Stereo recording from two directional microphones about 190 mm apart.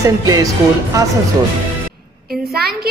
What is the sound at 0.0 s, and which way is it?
Speech, 15° right (ahead or behind).